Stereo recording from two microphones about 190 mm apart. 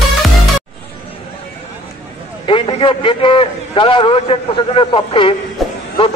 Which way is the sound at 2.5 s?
25° left (ahead or behind).